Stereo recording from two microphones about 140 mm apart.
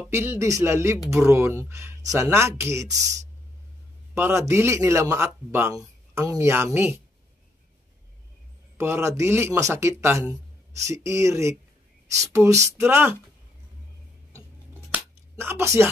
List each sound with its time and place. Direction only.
0.1 s a man's voice: 20° right (ahead or behind)
8.7 s a man's voice: 15° right (ahead or behind)
14.7 s scissors: 15° right (ahead or behind)